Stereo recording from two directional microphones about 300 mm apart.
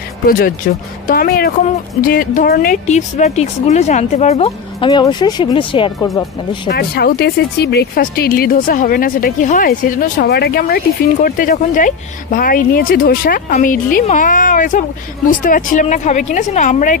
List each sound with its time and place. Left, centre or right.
0.7 s a woman's voice: left
5.9 s speech: centre
6.7 s a woman's voice: left